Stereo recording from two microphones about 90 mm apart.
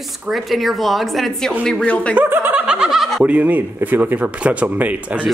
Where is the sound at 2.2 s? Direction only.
20° right (ahead or behind); by 3.2 s centre (ahead or behind).